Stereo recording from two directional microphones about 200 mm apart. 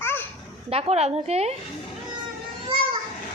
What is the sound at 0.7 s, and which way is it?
Speech, 30° right (ahead or behind).